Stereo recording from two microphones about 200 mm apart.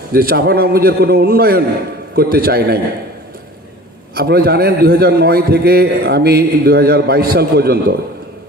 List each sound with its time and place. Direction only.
0.1 s a man's voice: 50° right (ahead or behind)
4.1 s a man's voice: 50° right (ahead or behind)